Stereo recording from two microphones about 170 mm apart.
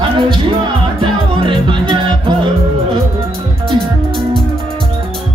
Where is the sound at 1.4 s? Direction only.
30° right (ahead or behind).